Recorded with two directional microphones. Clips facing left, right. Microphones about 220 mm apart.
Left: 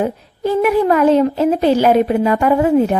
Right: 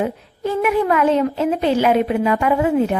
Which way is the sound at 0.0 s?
35° left (ahead or behind).